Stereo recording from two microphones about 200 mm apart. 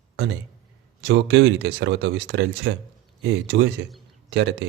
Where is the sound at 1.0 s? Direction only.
60° right (ahead or behind).